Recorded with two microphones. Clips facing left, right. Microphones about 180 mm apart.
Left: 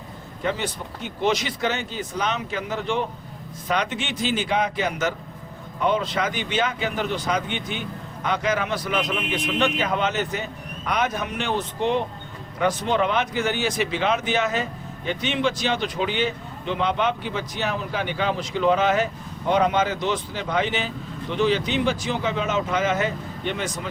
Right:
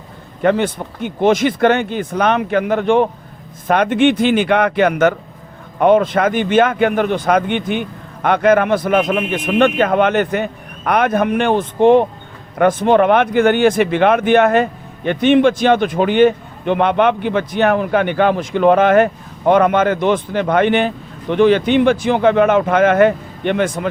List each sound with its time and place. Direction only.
0.4 s speech: 55° right (ahead or behind)